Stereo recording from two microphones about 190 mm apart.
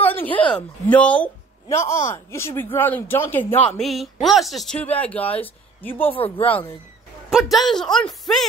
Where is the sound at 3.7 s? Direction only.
Centre (ahead or behind).